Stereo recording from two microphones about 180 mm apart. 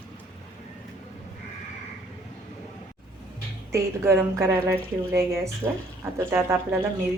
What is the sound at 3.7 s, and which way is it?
A woman's voice, 15° right (ahead or behind).